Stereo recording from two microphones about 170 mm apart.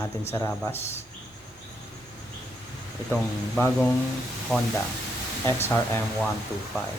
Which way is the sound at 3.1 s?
10° left (ahead or behind).